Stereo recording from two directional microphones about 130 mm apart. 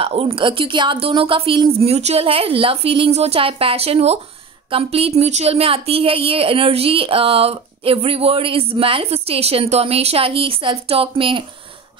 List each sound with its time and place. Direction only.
0.0 s speech: 45° right (ahead or behind)